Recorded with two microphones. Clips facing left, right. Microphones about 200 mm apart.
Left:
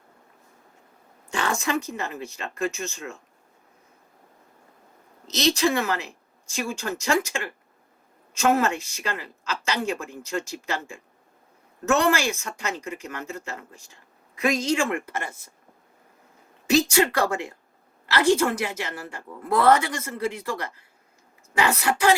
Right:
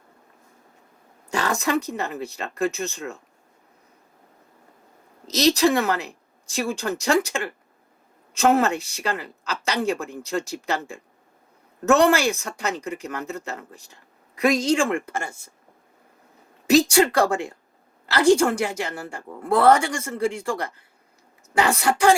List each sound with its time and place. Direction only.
1.3 s speech: 40° right (ahead or behind)
5.3 s speech: 40° right (ahead or behind)
16.6 s speech: 35° right (ahead or behind)